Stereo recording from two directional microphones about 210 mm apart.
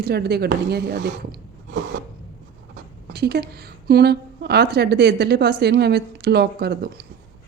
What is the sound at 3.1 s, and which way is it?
A woman's voice, 50° right (ahead or behind).